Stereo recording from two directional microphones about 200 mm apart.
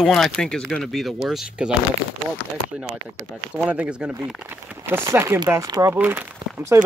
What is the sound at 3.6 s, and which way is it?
Speech, 5° right (ahead or behind).